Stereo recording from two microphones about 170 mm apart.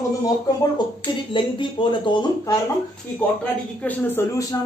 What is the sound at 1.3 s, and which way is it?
Speech, 30° left (ahead or behind).